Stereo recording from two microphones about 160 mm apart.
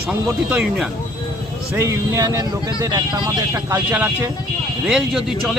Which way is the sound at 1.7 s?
20° right (ahead or behind).